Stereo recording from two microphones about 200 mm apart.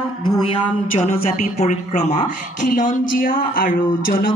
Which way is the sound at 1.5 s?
35° left (ahead or behind).